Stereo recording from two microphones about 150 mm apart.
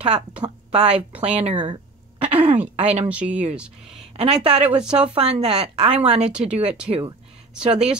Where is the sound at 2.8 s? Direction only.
45° right (ahead or behind).